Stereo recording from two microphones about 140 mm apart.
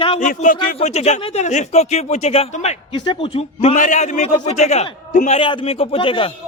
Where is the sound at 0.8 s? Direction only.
50° left (ahead or behind).